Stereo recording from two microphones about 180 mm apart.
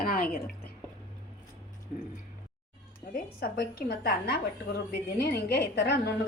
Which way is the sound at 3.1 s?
55° left (ahead or behind).